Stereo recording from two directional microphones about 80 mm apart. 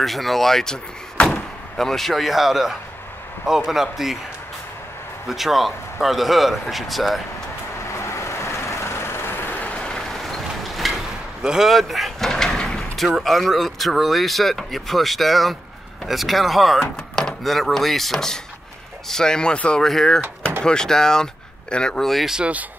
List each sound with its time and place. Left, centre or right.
0.0 s speech: centre
5.3 s speech: centre
7.9 s vehicle: left; by 10.9 s centre
11.4 s speech: centre